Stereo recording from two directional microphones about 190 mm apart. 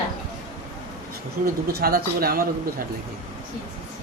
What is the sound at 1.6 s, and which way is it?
Speech, 55° right (ahead or behind).